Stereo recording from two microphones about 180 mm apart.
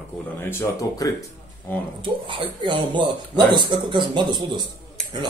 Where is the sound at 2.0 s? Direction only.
25° right (ahead or behind).